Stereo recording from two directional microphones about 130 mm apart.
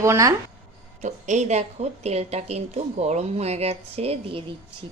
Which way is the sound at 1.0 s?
65° right (ahead or behind).